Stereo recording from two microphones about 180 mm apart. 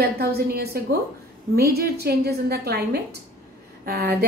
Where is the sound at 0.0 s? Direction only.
60° right (ahead or behind).